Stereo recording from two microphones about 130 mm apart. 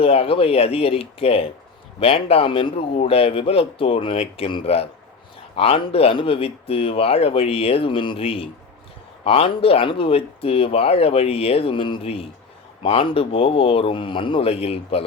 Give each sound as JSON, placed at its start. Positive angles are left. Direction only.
{"t": 0.0, "sound": "speech", "side_deg": 45}